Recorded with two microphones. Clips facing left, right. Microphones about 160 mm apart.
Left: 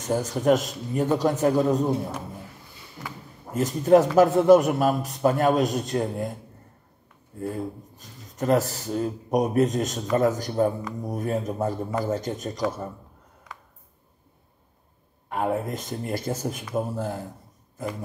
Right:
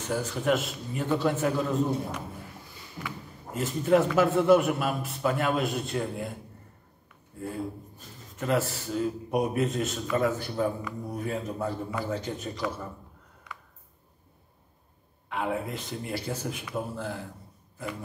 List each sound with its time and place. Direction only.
0.0 s a man's voice: 40° left (ahead or behind)
3.5 s a man's voice: 40° left (ahead or behind)
8.4 s a man's voice: 40° left (ahead or behind)
15.2 s speech: 45° left (ahead or behind)